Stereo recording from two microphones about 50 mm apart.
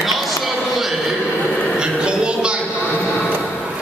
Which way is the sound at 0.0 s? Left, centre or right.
Centre.